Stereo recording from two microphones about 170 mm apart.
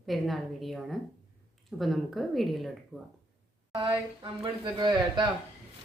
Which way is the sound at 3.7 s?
30° right (ahead or behind).